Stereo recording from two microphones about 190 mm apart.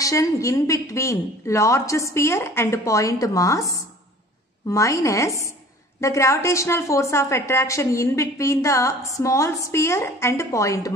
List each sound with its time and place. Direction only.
0.0 s a woman's voice: 15° left (ahead or behind)